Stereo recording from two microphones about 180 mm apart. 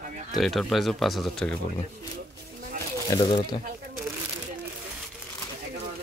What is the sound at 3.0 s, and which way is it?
Speech, 20° left (ahead or behind).